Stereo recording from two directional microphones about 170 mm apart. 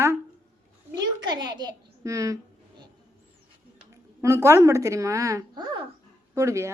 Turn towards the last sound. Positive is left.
turn(degrees=-15)  # may be behind; listen again after turning